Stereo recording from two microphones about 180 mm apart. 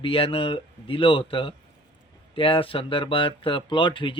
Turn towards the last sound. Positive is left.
turn(degrees=25)  # may be behind; listen again after turning